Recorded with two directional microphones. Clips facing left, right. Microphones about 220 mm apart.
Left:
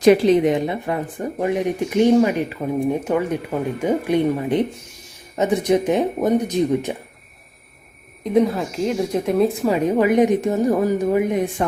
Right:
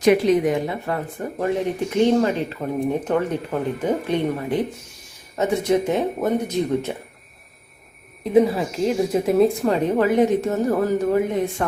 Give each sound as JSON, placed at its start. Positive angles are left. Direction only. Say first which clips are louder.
{"t": 0.0, "sound": "speech", "louder": "left 3 dB", "side_deg": 30}
{"t": 8.2, "sound": "speech", "louder": "right 1 dB", "side_deg": 0}